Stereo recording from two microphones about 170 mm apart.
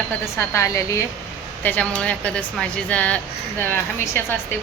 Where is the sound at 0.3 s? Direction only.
15° left (ahead or behind).